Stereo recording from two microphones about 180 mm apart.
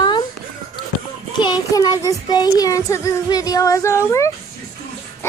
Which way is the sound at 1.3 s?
25° left (ahead or behind).